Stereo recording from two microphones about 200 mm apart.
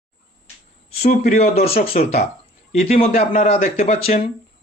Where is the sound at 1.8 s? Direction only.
30° left (ahead or behind).